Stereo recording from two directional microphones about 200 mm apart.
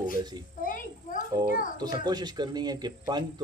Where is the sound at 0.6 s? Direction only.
45° left (ahead or behind).